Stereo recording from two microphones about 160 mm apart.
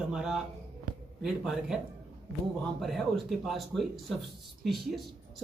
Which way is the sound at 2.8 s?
Centre (ahead or behind).